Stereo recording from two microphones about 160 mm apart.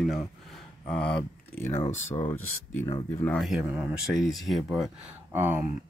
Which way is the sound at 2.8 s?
15° left (ahead or behind).